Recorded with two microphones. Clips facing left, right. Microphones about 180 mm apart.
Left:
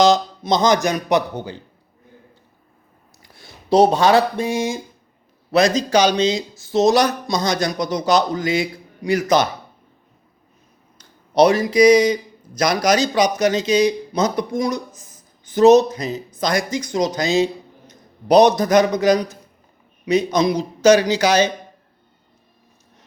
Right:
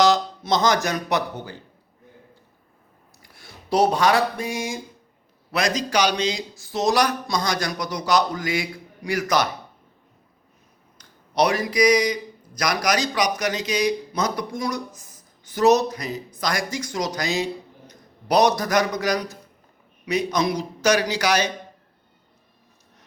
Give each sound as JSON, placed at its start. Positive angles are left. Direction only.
{"t": 0.0, "sound": "speech", "side_deg": 20}
{"t": 3.3, "sound": "speech", "side_deg": 25}
{"t": 10.9, "sound": "speech", "side_deg": 25}